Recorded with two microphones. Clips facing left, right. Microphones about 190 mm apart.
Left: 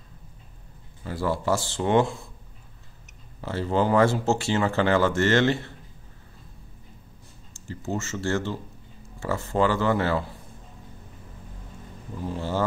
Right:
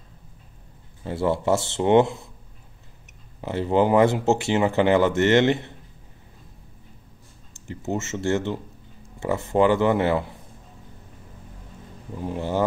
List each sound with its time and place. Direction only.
1.0 s speech: 25° right (ahead or behind)
3.3 s speech: 20° right (ahead or behind)
7.5 s speech: 20° right (ahead or behind)
12.2 s speech: 20° right (ahead or behind)